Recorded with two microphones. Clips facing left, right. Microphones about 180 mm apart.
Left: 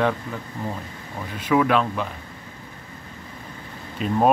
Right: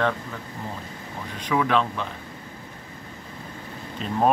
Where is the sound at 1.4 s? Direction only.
5° left (ahead or behind).